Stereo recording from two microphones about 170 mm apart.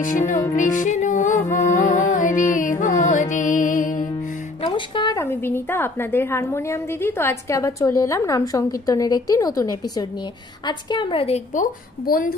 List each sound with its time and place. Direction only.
0.0 s music: 50° left (ahead or behind)
4.6 s a woman's voice: 25° left (ahead or behind)
12.1 s a woman's voice: 55° left (ahead or behind)